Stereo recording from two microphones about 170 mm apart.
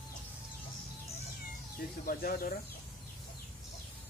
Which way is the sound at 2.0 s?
60° left (ahead or behind).